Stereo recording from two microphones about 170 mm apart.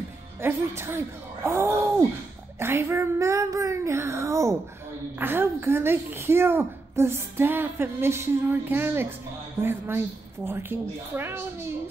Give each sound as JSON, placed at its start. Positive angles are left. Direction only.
{"t": 0.4, "sound": "a woman's voice", "side_deg": -15}